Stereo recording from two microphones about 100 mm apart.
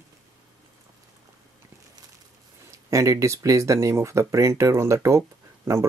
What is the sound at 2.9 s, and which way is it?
Speech, 30° right (ahead or behind).